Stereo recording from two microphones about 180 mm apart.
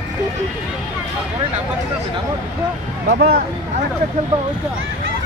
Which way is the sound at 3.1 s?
55° right (ahead or behind).